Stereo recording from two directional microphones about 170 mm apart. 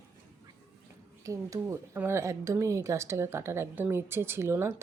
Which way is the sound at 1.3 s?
20° right (ahead or behind).